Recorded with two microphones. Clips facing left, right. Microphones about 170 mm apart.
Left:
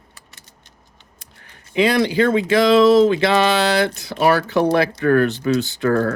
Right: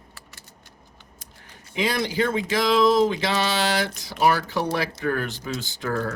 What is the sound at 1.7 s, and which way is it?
Speech, 65° left (ahead or behind).